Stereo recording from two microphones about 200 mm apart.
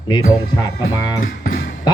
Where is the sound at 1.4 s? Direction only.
40° left (ahead or behind).